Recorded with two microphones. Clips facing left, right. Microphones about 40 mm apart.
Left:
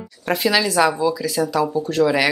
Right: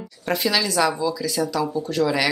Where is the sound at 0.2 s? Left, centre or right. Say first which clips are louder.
Left 3 dB; centre.